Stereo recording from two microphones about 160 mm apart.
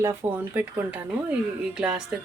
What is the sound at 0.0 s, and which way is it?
Speech, 10° right (ahead or behind).